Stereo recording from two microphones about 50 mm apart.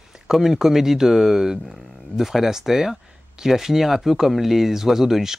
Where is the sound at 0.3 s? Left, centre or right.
Centre.